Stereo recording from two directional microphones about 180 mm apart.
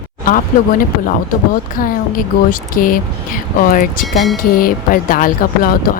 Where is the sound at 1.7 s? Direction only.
50° left (ahead or behind).